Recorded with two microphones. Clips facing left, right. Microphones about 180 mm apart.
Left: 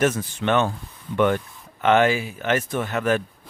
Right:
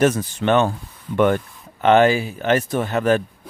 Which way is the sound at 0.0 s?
40° right (ahead or behind).